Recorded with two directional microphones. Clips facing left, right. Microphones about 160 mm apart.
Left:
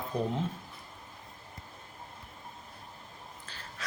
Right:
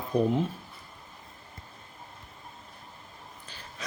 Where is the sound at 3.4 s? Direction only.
15° right (ahead or behind).